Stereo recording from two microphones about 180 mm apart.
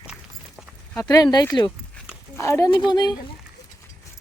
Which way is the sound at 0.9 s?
20° left (ahead or behind).